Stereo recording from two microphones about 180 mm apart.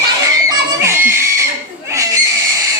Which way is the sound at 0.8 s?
15° right (ahead or behind).